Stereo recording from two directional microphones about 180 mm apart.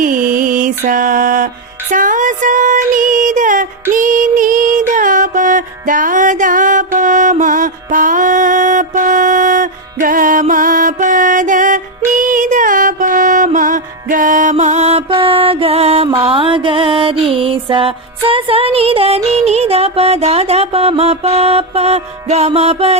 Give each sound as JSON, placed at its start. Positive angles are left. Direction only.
{"t": 0.0, "sound": "mantra", "side_deg": -50}
{"t": 1.9, "sound": "music", "side_deg": -45}
{"t": 3.9, "sound": "female singing", "side_deg": -45}
{"t": 4.9, "sound": "music", "side_deg": -45}